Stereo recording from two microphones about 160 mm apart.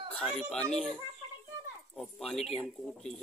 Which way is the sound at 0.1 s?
5° left (ahead or behind).